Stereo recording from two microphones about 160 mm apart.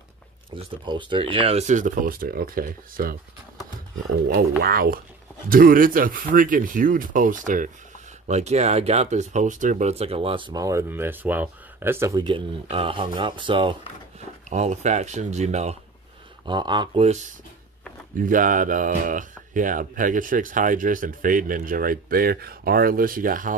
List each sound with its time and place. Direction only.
0.6 s speech: 30° right (ahead or behind); by 3.2 s 65° right (ahead or behind)
4.3 s speech: 65° right (ahead or behind)
8.3 s speech: 45° right (ahead or behind); by 12.2 s 15° right (ahead or behind)
12.2 s speech: 30° right (ahead or behind)
14.5 s speech: 45° right (ahead or behind)
16.4 s speech: 30° right (ahead or behind); by 17.3 s 45° right (ahead or behind)
18.1 s speech: 55° right (ahead or behind)